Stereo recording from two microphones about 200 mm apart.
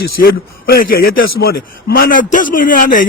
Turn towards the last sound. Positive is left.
turn(degrees=40)  # may be behind; listen again after turning